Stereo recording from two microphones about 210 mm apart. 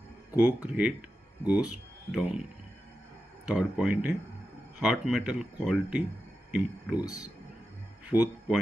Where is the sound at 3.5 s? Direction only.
5° right (ahead or behind).